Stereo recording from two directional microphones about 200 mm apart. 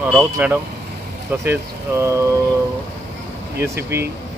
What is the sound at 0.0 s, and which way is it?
Speech, 10° right (ahead or behind).